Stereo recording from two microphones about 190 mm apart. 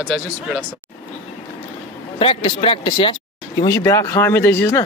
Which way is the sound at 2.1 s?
30° left (ahead or behind).